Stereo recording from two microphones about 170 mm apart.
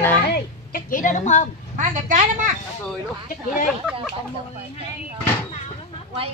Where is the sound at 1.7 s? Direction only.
45° right (ahead or behind).